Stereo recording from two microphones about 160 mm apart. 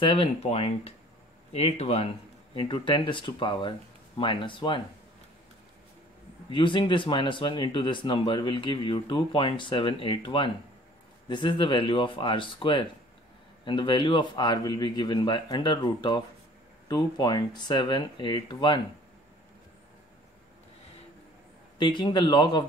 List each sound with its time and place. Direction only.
0.0 s speech: 35° left (ahead or behind)
6.5 s a man's voice: 30° left (ahead or behind)
21.7 s a man's voice: 30° left (ahead or behind)